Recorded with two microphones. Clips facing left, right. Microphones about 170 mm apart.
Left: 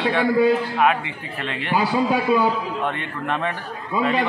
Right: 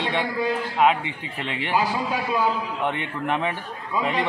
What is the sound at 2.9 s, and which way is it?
Speech, 15° right (ahead or behind).